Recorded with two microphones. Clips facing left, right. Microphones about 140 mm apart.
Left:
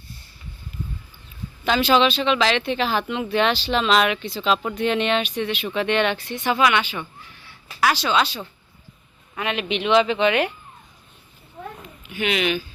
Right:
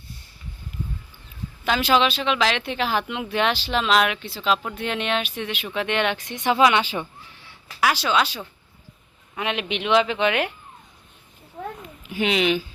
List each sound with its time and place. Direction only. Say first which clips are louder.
1.6 s speech: left 2 dB; 5° right (ahead or behind); by 7.1 s 30° right (ahead or behind)
7.8 s speech: left 1 dB; 10° right (ahead or behind)
9.4 s speech: left 2 dB; 15° right (ahead or behind)
12.0 s speech: right 2 dB; 30° right (ahead or behind)